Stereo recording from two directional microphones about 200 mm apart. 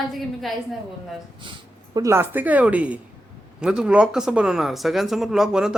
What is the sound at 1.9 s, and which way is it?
A woman's voice, 15° right (ahead or behind).